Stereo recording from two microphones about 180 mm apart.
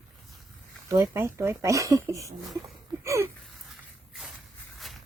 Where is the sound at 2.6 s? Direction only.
15° right (ahead or behind).